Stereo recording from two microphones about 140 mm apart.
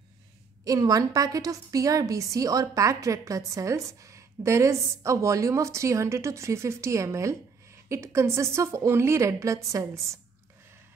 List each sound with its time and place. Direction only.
0.7 s a woman's voice: 25° right (ahead or behind)